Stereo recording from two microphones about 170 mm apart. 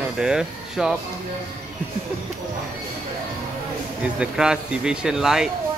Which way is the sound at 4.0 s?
5° right (ahead or behind).